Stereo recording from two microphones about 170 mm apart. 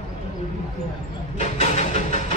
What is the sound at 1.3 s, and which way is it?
Music, 45° left (ahead or behind).